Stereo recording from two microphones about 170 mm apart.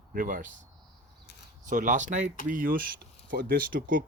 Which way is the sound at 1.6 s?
50° right (ahead or behind).